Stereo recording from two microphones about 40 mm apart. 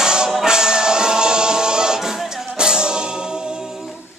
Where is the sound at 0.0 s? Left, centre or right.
Centre.